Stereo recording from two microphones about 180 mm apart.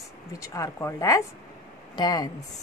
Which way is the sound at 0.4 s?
15° left (ahead or behind).